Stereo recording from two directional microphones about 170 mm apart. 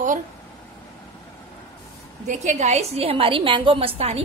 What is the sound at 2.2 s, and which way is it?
A woman's voice, 45° right (ahead or behind).